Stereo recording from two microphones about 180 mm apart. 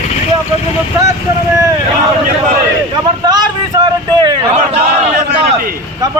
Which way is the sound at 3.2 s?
20° right (ahead or behind).